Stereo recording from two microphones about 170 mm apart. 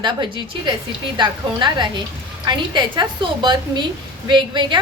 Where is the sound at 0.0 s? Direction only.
25° right (ahead or behind).